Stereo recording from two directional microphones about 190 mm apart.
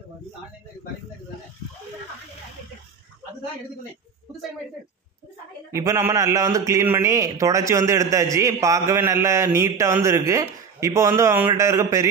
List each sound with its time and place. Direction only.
5.7 s a man's voice: 15° right (ahead or behind)